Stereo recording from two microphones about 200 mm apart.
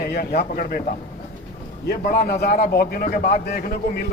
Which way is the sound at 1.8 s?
55° left (ahead or behind).